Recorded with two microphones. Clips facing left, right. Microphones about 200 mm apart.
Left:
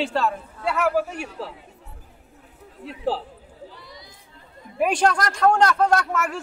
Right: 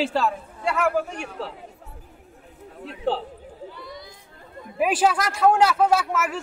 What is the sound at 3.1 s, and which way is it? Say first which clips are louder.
Speech: even; 5° left (ahead or behind).